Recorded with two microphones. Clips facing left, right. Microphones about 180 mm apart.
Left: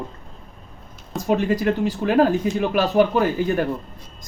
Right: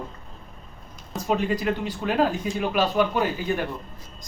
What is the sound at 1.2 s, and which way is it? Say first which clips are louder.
Speech: left 4 dB; 45° left (ahead or behind).